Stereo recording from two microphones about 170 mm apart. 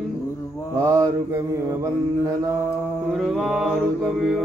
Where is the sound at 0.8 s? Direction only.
20° right (ahead or behind).